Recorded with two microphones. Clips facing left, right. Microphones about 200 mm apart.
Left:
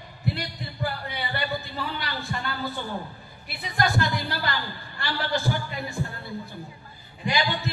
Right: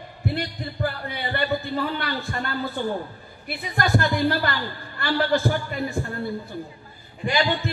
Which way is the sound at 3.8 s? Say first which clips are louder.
Right 4 dB; 50° right (ahead or behind).